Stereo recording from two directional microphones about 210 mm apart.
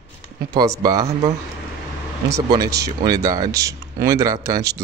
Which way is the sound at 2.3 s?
15° right (ahead or behind).